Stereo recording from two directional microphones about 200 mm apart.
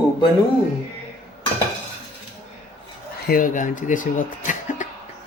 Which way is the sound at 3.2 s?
45° left (ahead or behind).